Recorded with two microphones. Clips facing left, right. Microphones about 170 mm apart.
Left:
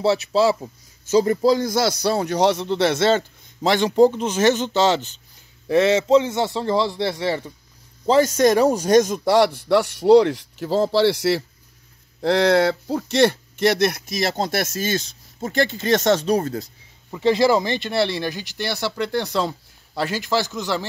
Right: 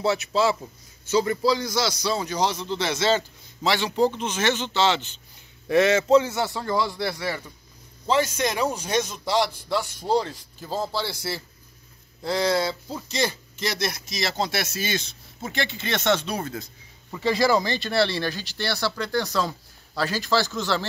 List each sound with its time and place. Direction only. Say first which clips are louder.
0.0 s a man's voice: left 4 dB; 35° left (ahead or behind)
5.7 s speech: left 2 dB; 30° left (ahead or behind)
8.4 s speech: left 9 dB; 40° left (ahead or behind); by 11.4 s 80° left
12.2 s speech: left 7 dB; 70° left (ahead or behind); by 16.6 s 40° left (ahead or behind)
17.1 s speech: left 4 dB; 20° left (ahead or behind)